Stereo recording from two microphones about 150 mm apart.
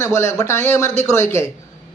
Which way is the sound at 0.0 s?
15° left (ahead or behind).